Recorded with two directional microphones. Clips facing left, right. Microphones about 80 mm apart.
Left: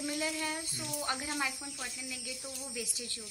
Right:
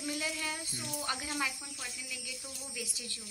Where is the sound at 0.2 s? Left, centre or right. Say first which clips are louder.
Left 2 dB; left.